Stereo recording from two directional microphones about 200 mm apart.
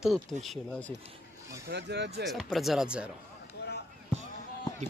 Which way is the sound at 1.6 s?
60° right (ahead or behind).